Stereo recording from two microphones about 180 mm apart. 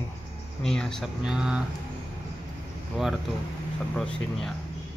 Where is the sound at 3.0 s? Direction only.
Centre (ahead or behind).